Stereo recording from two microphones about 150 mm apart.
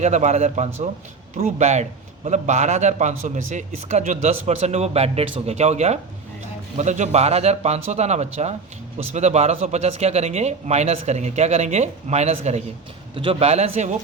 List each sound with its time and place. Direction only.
0.0 s a man's voice: 50° right (ahead or behind)